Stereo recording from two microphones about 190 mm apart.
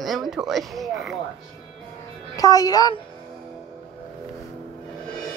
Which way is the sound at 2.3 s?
20° left (ahead or behind).